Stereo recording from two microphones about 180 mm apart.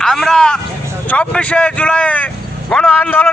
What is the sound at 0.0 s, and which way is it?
Speech, centre (ahead or behind).